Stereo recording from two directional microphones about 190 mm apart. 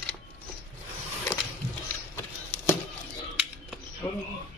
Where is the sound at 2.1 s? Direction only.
10° left (ahead or behind).